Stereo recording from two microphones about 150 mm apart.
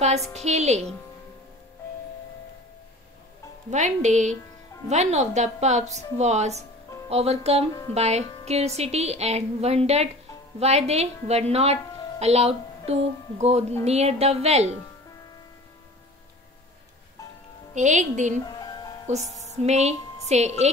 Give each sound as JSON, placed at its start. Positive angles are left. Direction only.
{"t": 0.3, "sound": "a woman's voice", "side_deg": -50}
{"t": 3.7, "sound": "a woman's voice", "side_deg": -50}
{"t": 17.7, "sound": "a woman's voice", "side_deg": -55}
{"t": 18.6, "sound": "music", "side_deg": 25}
{"t": 19.5, "sound": "a woman's voice", "side_deg": -50}